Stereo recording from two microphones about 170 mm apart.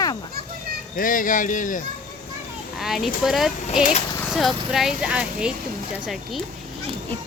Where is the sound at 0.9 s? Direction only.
55° left (ahead or behind).